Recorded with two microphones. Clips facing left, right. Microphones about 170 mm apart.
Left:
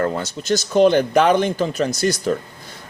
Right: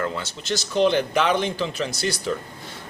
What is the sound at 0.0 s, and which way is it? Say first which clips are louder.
Speech: left 6 dB; 45° left (ahead or behind).